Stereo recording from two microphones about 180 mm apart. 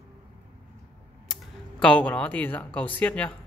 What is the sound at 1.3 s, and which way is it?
Speech, 5° left (ahead or behind).